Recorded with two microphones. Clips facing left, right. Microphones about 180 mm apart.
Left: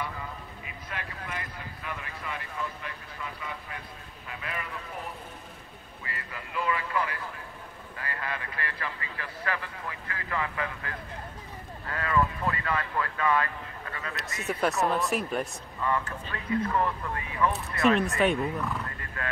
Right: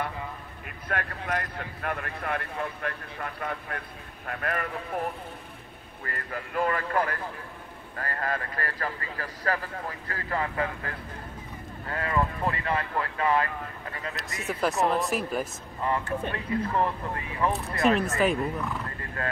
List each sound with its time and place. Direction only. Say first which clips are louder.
0.7 s speech: right 8 dB; 55° right (ahead or behind)
6.0 s speech: right 6 dB; 50° right (ahead or behind); by 13.5 s 30° right (ahead or behind)
14.4 s speech: right 1 dB; centre (ahead or behind)
15.8 s speech: right 2 dB; 30° right (ahead or behind)
17.9 s speech: even; centre (ahead or behind)
19.2 s speech: right 3 dB; 35° right (ahead or behind)